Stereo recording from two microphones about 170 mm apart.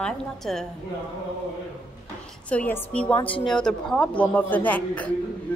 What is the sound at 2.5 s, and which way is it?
Speech, 10° left (ahead or behind).